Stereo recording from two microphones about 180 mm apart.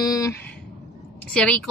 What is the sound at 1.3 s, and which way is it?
Speech, 5° left (ahead or behind).